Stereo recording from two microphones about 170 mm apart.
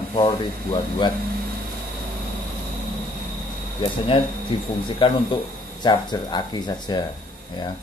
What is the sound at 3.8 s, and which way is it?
Speech, 30° left (ahead or behind).